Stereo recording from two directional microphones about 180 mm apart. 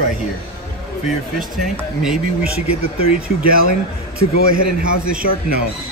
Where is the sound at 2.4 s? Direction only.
35° left (ahead or behind).